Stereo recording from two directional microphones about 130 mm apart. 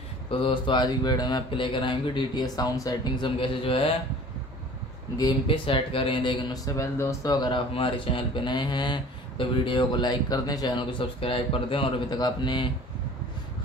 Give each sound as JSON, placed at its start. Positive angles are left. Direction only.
{"t": 0.3, "sound": "speech", "side_deg": 45}
{"t": 5.1, "sound": "speech", "side_deg": 35}